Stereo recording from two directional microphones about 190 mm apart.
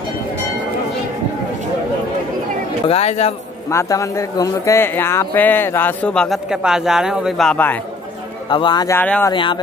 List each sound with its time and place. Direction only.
2.9 s speech: 35° left (ahead or behind)
3.7 s speech: 15° left (ahead or behind)
8.5 s speech: 25° left (ahead or behind)
9.3 s speech: 25° left (ahead or behind)